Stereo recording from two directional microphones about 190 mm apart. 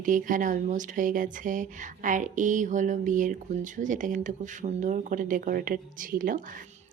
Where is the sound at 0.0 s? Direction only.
45° right (ahead or behind).